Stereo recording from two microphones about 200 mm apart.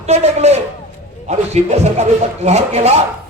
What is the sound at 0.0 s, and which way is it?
Speech, 35° right (ahead or behind).